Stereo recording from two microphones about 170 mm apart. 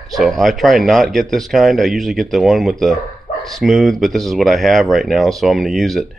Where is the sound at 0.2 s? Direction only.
Centre (ahead or behind).